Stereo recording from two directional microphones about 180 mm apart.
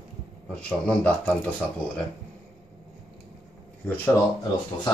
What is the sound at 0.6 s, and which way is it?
Speech, 5° left (ahead or behind).